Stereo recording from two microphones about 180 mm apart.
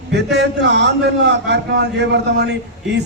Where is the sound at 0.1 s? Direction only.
70° right (ahead or behind).